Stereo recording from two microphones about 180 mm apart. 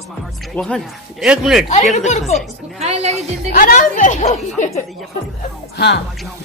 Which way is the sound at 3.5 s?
45° left (ahead or behind).